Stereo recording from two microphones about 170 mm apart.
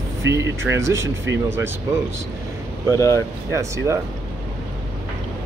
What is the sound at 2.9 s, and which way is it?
Speech, 15° left (ahead or behind).